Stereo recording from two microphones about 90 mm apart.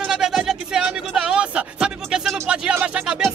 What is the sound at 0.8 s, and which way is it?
Music, 10° right (ahead or behind).